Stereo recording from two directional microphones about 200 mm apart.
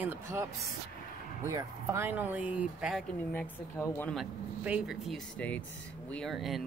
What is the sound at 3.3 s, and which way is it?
Speech, 10° left (ahead or behind).